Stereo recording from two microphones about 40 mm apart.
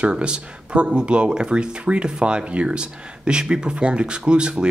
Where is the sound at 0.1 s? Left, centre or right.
Right.